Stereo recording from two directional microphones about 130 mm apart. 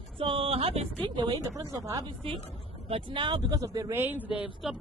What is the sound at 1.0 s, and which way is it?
A man's voice, 35° right (ahead or behind).